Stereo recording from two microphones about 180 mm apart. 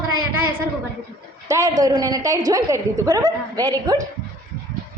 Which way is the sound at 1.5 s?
15° right (ahead or behind).